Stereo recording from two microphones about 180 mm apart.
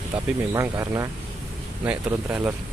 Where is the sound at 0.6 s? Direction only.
15° right (ahead or behind).